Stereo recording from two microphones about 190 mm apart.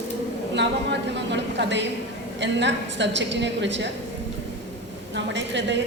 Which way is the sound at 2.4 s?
70° right (ahead or behind).